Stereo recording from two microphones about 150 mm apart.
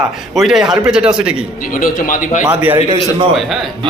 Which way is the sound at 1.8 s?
65° left (ahead or behind).